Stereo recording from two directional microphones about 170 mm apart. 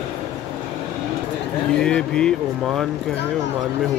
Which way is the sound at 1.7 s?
5° left (ahead or behind).